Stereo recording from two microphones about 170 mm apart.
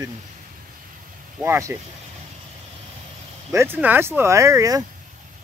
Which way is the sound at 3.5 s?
15° right (ahead or behind).